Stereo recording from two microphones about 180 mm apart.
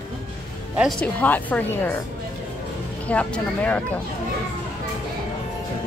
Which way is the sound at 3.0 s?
5° left (ahead or behind).